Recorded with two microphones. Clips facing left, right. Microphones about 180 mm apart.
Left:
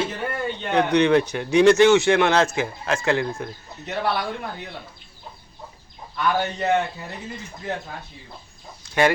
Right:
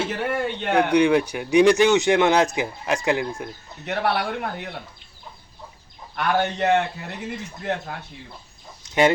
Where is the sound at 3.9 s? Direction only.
70° right (ahead or behind).